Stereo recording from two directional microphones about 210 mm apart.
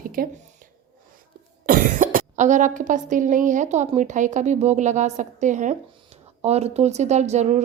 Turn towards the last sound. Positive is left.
turn(degrees=-30)  # may be behind; listen again after turning